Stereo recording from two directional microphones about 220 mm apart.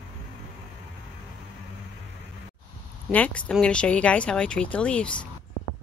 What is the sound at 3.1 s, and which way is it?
A woman's voice, 5° left (ahead or behind).